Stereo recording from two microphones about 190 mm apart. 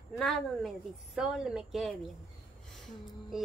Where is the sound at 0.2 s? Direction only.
Centre (ahead or behind).